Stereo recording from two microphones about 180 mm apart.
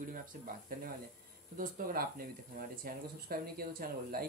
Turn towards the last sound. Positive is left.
turn(degrees=-55)  # may be behind; listen again after turning